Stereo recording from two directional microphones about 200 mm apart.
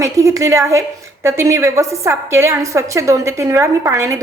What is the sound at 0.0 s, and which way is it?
A woman's voice, 15° right (ahead or behind).